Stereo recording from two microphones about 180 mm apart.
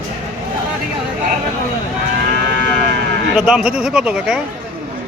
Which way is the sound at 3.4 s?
5° right (ahead or behind).